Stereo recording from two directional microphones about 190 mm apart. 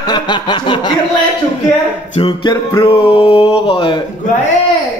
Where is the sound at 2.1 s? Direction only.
25° left (ahead or behind).